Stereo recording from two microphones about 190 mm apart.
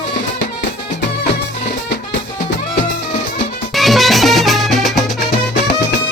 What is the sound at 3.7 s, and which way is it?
Music, centre (ahead or behind).